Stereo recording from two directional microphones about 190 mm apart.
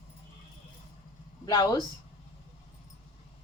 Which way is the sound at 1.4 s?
20° left (ahead or behind).